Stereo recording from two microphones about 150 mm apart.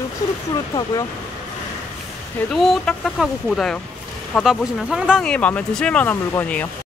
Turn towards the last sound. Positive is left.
turn(degrees=10)  # may be behind; listen again after turning